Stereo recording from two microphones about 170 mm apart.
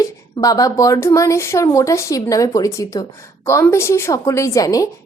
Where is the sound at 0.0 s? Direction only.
20° left (ahead or behind).